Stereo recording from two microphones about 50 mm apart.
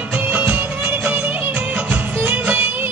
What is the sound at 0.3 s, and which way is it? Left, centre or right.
Music, right.